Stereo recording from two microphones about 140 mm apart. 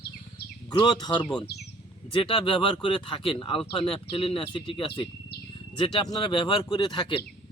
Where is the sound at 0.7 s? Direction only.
30° left (ahead or behind).